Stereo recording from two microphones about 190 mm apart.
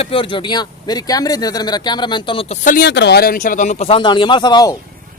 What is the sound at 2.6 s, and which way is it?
Speech, 45° left (ahead or behind).